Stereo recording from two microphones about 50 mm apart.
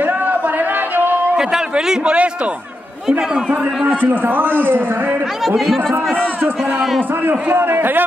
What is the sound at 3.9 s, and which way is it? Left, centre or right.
A man's voice, right.